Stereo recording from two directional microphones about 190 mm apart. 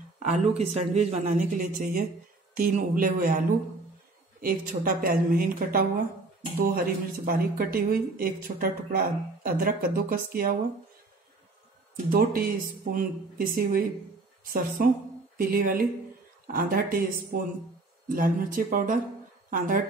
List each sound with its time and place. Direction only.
0.2 s speech: 35° right (ahead or behind)
4.4 s speech: 50° right (ahead or behind)
12.1 s speech: 50° right (ahead or behind)